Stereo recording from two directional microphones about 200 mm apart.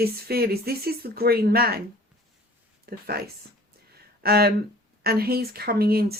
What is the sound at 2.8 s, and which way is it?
Speech, 50° right (ahead or behind).